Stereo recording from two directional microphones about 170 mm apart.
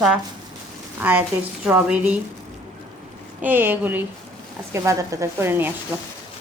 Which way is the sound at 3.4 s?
10° right (ahead or behind).